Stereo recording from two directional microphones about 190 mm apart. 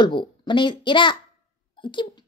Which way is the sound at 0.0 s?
25° left (ahead or behind).